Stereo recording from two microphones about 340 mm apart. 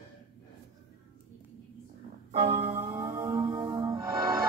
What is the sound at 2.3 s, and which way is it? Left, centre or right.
Music, centre.